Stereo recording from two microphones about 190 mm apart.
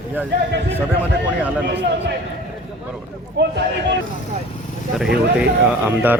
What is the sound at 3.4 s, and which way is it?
Speech, 65° right (ahead or behind).